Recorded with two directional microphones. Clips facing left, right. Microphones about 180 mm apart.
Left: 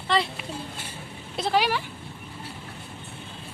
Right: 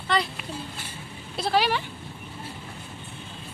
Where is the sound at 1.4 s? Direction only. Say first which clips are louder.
Even; 15° left (ahead or behind).